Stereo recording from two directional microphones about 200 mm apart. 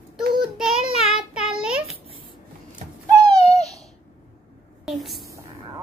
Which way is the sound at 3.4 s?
30° left (ahead or behind).